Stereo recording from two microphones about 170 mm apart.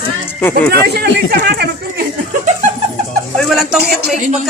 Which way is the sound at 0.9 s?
65° right (ahead or behind).